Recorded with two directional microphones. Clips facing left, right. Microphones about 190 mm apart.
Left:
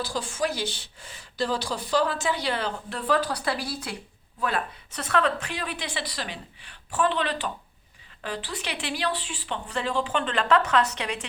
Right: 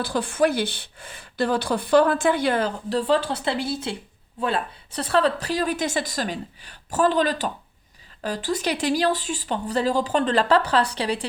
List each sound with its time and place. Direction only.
0.0 s a woman's voice: 60° right (ahead or behind); by 3.0 s 45° right (ahead or behind)
3.1 s a woman's voice: 25° right (ahead or behind)